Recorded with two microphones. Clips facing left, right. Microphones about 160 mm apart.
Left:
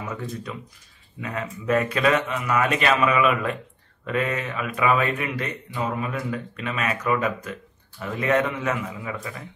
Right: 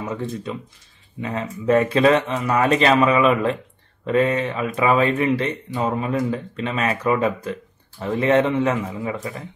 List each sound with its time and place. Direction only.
0.0 s speech: 25° right (ahead or behind)